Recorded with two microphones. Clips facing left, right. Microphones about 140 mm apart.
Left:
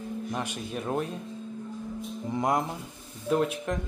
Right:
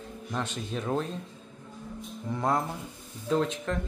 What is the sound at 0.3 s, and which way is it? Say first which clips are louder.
Speech: right 4 dB; 10° left (ahead or behind).